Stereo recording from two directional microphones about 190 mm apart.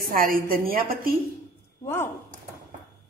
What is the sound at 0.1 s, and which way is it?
Speech, 50° right (ahead or behind).